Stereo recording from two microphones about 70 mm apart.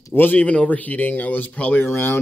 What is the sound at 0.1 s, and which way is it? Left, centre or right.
Speech, left.